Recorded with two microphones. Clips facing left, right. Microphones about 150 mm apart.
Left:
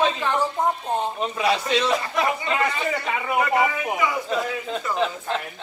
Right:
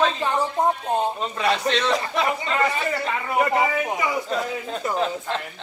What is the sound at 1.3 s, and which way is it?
Speech, 10° left (ahead or behind).